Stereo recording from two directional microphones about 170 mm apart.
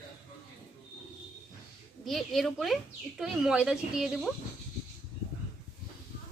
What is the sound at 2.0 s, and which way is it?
Speech, centre (ahead or behind).